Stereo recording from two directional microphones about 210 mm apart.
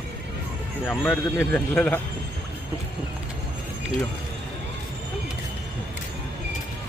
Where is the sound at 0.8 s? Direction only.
5° left (ahead or behind).